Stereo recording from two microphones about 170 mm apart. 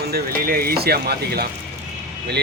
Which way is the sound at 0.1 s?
60° right (ahead or behind).